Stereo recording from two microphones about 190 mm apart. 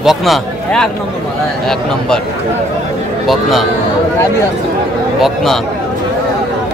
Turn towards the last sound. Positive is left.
turn(degrees=0)  # may be behind; listen again after turning